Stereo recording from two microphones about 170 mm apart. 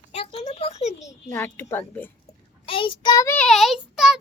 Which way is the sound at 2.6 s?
30° left (ahead or behind).